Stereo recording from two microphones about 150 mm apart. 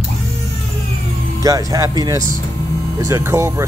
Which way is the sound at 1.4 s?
20° right (ahead or behind).